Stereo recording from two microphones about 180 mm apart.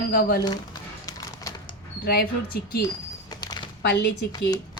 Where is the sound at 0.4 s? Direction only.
25° left (ahead or behind).